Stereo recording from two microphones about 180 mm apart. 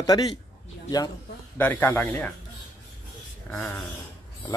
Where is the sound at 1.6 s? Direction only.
10° left (ahead or behind).